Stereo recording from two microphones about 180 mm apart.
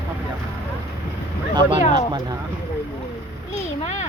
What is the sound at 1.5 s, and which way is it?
Speech, 20° right (ahead or behind).